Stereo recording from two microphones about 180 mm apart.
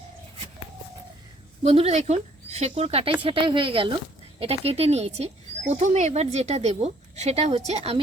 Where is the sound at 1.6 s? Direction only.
35° right (ahead or behind).